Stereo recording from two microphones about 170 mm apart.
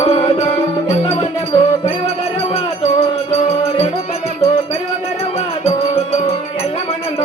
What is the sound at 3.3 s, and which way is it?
Music, 40° left (ahead or behind).